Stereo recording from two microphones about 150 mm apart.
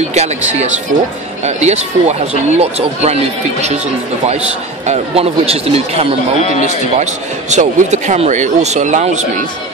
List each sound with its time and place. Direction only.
0.1 s speech: 50° right (ahead or behind)
6.4 s a man's voice: 50° left (ahead or behind)
7.0 s speech: 50° right (ahead or behind)